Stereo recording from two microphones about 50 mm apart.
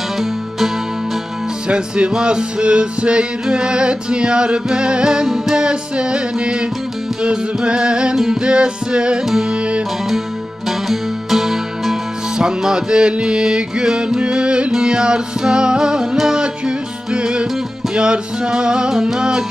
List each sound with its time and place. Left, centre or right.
1.7 s music: centre
9.2 s music: centre
9.5 s music: right
10.9 s music: centre